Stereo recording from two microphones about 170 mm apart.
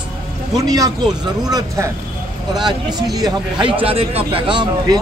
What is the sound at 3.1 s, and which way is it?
Speech, 20° right (ahead or behind).